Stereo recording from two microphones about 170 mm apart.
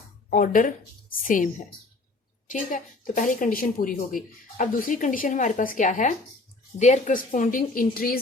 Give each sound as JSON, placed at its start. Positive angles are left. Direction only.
{"t": 0.3, "sound": "speech", "side_deg": 50}
{"t": 2.5, "sound": "speech", "side_deg": 50}